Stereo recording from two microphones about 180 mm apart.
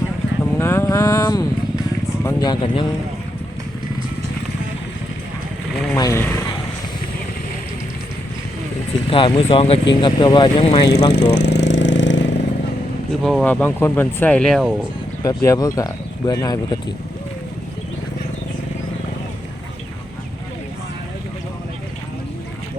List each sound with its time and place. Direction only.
0.6 s vehicle: 15° left (ahead or behind)
2.2 s speech: 25° left (ahead or behind)
5.9 s speech: 15° left (ahead or behind)
9.0 s speech: 30° left (ahead or behind)
11.1 s vehicle: 70° left (ahead or behind); by 12.3 s 90° left
13.2 s speech: 5° left (ahead or behind)
15.2 s speech: 20° left (ahead or behind)